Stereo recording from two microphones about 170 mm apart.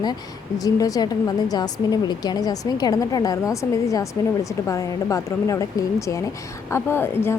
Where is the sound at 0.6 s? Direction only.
20° left (ahead or behind).